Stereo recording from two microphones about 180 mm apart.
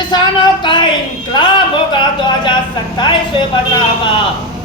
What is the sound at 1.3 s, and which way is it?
Music, 25° left (ahead or behind).